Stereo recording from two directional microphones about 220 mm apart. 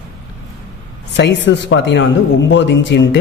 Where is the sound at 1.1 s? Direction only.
55° left (ahead or behind).